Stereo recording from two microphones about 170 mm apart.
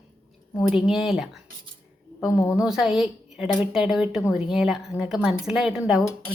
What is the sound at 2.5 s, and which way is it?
A woman's voice, 5° right (ahead or behind).